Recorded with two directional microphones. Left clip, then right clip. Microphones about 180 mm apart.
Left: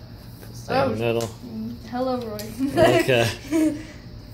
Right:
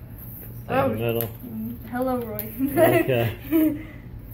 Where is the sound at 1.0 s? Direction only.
5° left (ahead or behind).